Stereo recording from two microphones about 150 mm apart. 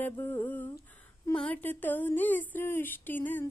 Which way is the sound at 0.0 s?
15° left (ahead or behind).